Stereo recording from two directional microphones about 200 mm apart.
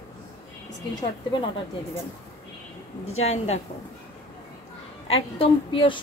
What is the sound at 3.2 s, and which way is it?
Speech, 35° left (ahead or behind).